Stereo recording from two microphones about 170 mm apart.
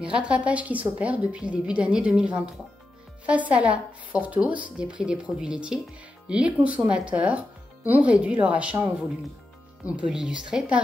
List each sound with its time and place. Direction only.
0.0 s speech: 5° right (ahead or behind)
9.8 s speech: 5° right (ahead or behind)